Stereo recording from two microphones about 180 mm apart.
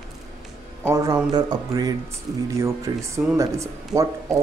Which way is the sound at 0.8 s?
20° right (ahead or behind).